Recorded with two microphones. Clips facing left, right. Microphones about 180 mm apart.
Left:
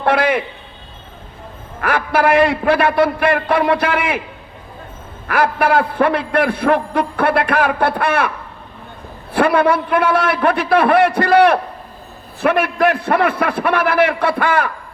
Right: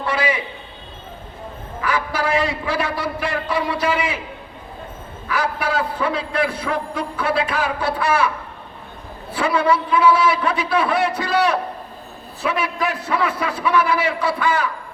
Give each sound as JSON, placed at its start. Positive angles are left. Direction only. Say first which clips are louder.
{"t": 0.0, "sound": "a man's voice", "louder": "left 6 dB", "side_deg": 60}
{"t": 1.8, "sound": "a man's voice", "louder": "left 6 dB", "side_deg": 60}
{"t": 5.3, "sound": "a man's voice", "louder": "left 7 dB", "side_deg": 60}
{"t": 9.3, "sound": "a man's voice", "louder": "left 5 dB", "side_deg": 60}